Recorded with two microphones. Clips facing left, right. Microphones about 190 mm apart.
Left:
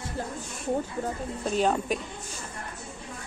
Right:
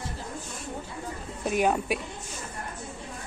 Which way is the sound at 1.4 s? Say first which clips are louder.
Right 1 dB; 10° right (ahead or behind).